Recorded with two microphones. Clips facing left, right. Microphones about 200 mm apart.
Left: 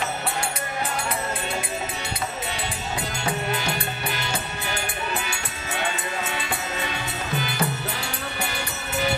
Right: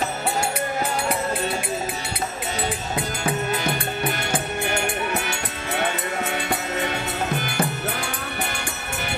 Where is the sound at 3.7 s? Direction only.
50° right (ahead or behind).